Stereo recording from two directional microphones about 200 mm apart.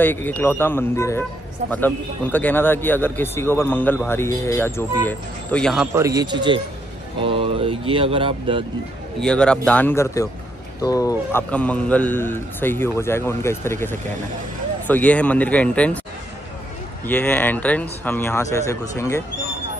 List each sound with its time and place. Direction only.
0.0 s speech: 10° left (ahead or behind)
5.9 s speech: 15° right (ahead or behind)
9.2 s speech: 5° left (ahead or behind)
17.0 s speech: 10° left (ahead or behind)